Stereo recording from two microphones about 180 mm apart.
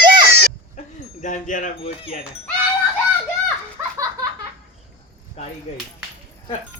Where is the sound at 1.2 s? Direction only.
45° left (ahead or behind).